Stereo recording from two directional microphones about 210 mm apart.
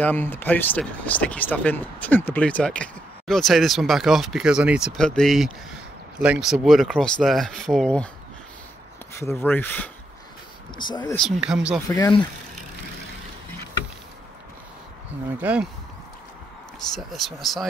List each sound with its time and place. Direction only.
0.0 s speech: 10° left (ahead or behind)
9.2 s speech: 10° left (ahead or behind)
10.8 s speech: 20° left (ahead or behind)
11.1 s speech: centre (ahead or behind)
11.9 s speech: 20° left (ahead or behind)
15.4 s speech: 5° right (ahead or behind)
16.9 s speech: centre (ahead or behind)